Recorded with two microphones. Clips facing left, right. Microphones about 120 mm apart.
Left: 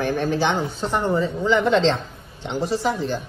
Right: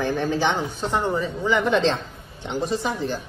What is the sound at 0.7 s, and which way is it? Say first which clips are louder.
Speech: left 2 dB; 20° right (ahead or behind).